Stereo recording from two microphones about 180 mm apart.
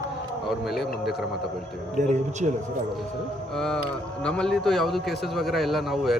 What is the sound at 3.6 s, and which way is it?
A man's voice, 5° left (ahead or behind).